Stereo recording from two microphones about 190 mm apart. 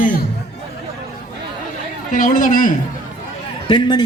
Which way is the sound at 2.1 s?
45° left (ahead or behind).